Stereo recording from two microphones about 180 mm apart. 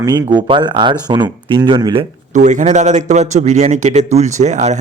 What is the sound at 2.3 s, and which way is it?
Speech, 40° right (ahead or behind).